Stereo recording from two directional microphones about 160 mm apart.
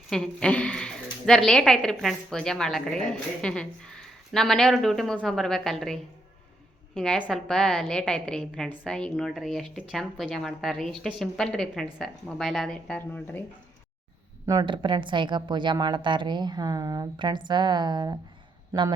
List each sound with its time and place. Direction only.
0.1 s speech: 5° left (ahead or behind)
14.4 s a woman's voice: 25° right (ahead or behind)